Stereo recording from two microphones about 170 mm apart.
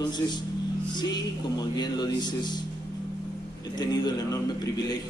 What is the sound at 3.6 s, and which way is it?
A man's voice, 25° left (ahead or behind).